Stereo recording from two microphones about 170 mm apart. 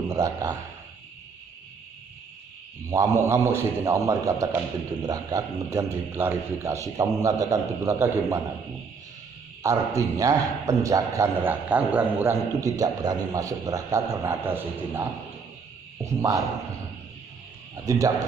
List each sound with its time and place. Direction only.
0.1 s a man's voice: 20° right (ahead or behind)
2.9 s a man's voice: 20° right (ahead or behind)
9.6 s a man's voice: 20° right (ahead or behind)
17.8 s a man's voice: 20° right (ahead or behind)